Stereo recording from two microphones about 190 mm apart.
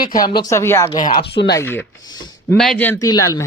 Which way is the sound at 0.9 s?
45° left (ahead or behind).